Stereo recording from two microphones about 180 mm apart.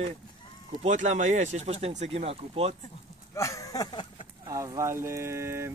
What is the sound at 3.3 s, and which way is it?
Speech, 15° left (ahead or behind).